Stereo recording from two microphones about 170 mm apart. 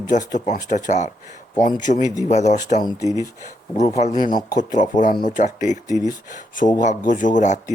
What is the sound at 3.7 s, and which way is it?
Speech, 45° left (ahead or behind).